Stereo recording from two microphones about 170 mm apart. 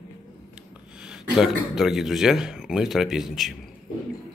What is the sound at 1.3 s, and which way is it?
Speech, centre (ahead or behind).